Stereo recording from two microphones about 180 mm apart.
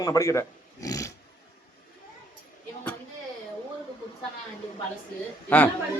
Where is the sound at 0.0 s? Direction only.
20° left (ahead or behind).